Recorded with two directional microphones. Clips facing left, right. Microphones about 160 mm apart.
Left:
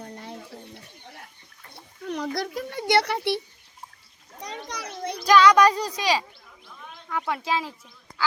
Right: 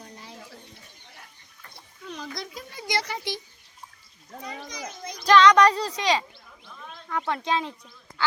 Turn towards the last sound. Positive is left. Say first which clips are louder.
# even
turn(degrees=5)  # may be behind; listen again after turning